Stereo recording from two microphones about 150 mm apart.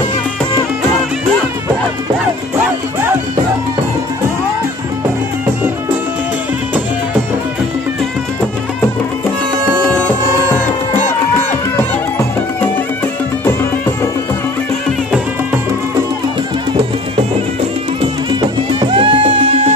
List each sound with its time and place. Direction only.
18.4 s music: 35° right (ahead or behind)